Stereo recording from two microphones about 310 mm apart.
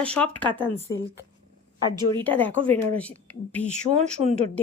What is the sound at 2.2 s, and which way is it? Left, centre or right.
A woman's voice, centre.